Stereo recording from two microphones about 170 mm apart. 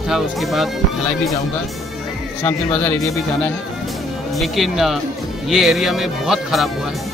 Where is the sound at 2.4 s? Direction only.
15° left (ahead or behind).